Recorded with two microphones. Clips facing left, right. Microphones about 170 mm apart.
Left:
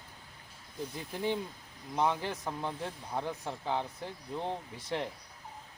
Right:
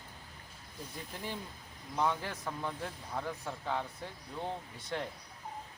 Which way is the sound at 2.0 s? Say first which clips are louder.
Left 2 dB; 25° left (ahead or behind).